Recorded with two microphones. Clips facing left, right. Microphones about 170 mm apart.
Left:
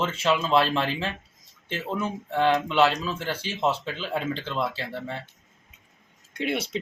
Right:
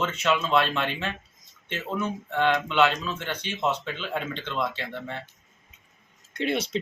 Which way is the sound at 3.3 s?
35° left (ahead or behind).